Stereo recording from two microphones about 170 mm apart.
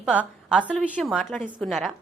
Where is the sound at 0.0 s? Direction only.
5° right (ahead or behind).